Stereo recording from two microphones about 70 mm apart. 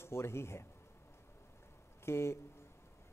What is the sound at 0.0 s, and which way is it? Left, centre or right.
Speech, left.